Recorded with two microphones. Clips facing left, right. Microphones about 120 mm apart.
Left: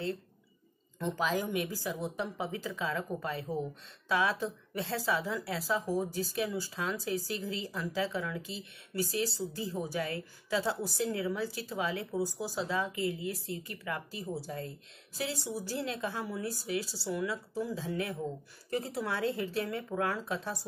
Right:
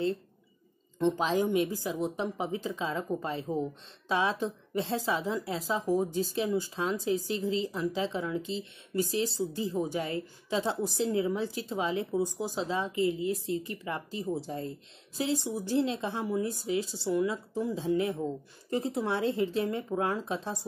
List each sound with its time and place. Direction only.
0.9 s a woman's voice: 25° right (ahead or behind)